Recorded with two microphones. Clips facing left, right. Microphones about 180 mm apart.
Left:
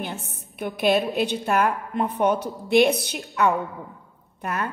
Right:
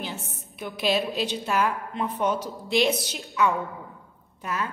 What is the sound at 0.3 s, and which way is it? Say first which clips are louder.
A woman's voice: left 5 dB; 55° left (ahead or behind).